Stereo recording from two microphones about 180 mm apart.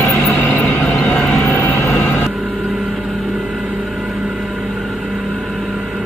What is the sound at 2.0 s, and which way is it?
Vehicle, 10° left (ahead or behind).